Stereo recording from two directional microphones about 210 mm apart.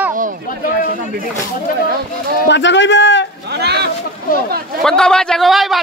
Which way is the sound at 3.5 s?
50° right (ahead or behind).